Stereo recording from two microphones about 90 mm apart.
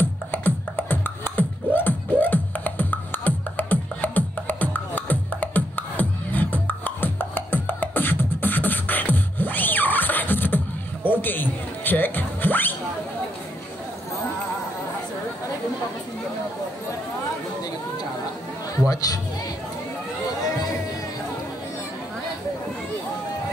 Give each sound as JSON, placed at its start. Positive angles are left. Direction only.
{"t": 0.0, "sound": "beatboxing", "side_deg": 25}
{"t": 11.1, "sound": "a sound", "side_deg": 20}
{"t": 18.9, "sound": "chatter", "side_deg": 45}